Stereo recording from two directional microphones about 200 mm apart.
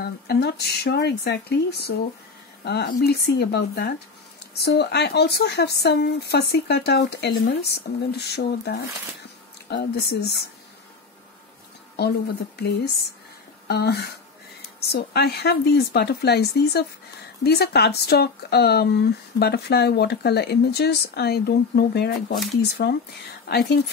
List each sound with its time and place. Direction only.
0.0 s speech: 55° left (ahead or behind)
13.7 s speech: 55° left (ahead or behind)